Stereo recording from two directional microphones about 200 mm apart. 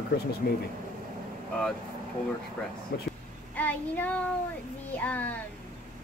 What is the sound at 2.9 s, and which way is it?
Speech, 60° left (ahead or behind).